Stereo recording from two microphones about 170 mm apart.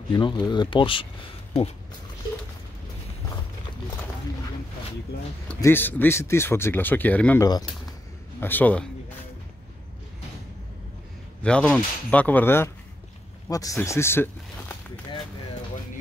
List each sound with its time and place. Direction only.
0.1 s speech: 25° left (ahead or behind)
5.6 s speech: 10° left (ahead or behind)
11.4 s speech: 5° left (ahead or behind)